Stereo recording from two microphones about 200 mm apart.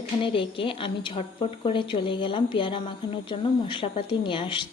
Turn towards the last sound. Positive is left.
turn(degrees=25)  # may be behind; listen again after turning